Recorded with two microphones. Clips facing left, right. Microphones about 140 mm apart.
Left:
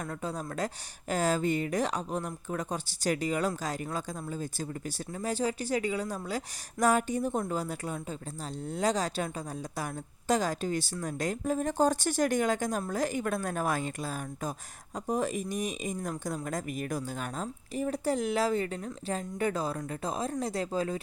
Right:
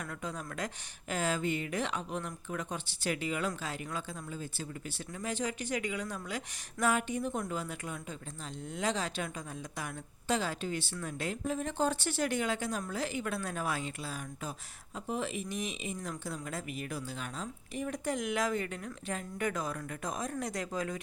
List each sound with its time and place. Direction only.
0.0 s a woman's voice: 35° left (ahead or behind)